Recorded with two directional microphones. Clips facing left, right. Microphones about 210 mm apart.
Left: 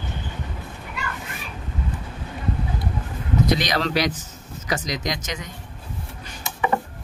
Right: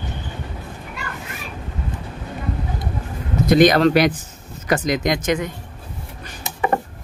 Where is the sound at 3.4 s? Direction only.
50° right (ahead or behind).